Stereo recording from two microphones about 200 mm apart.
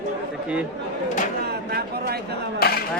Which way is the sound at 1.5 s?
50° right (ahead or behind).